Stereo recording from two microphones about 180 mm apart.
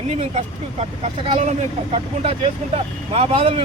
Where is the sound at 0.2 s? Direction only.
35° right (ahead or behind).